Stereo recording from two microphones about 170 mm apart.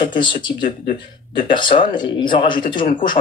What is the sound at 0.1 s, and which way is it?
Speech, 30° left (ahead or behind).